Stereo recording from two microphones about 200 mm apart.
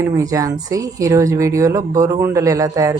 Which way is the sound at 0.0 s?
15° right (ahead or behind).